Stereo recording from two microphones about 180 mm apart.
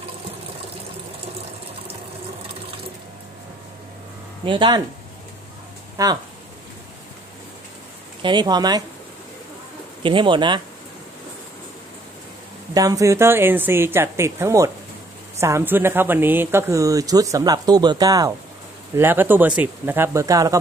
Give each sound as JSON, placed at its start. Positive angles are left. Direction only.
{"t": 4.5, "sound": "speech", "side_deg": -25}
{"t": 6.0, "sound": "speech", "side_deg": -20}
{"t": 8.2, "sound": "speech", "side_deg": -25}
{"t": 10.0, "sound": "speech", "side_deg": -25}
{"t": 12.7, "sound": "speech", "side_deg": -20}